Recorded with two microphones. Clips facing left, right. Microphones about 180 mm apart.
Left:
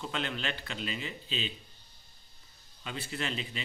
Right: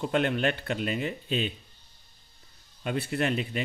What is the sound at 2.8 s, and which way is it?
Speech, 55° right (ahead or behind).